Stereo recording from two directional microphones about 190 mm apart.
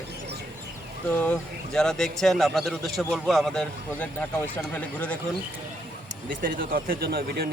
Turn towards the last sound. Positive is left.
turn(degrees=-55)  # may be behind; listen again after turning